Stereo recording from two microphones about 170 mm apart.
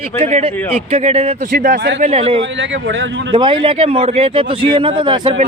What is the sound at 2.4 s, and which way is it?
Speech, 90° right.